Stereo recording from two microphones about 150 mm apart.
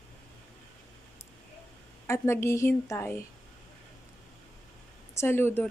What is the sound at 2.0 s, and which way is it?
Speech, 15° left (ahead or behind).